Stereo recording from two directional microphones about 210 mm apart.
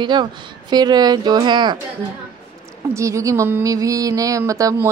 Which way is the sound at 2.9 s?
15° right (ahead or behind).